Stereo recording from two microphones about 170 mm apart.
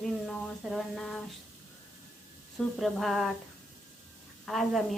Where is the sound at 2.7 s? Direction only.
Centre (ahead or behind).